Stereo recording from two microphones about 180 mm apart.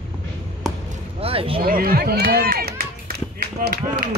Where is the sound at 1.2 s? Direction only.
30° right (ahead or behind).